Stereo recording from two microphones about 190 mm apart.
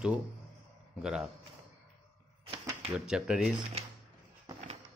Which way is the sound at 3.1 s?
5° right (ahead or behind).